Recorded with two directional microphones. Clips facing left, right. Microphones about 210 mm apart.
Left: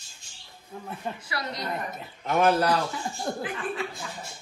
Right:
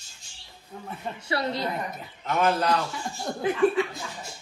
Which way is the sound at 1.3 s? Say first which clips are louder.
Right 9 dB; 30° right (ahead or behind).